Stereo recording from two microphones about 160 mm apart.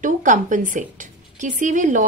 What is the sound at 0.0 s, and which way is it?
Speech, 55° right (ahead or behind).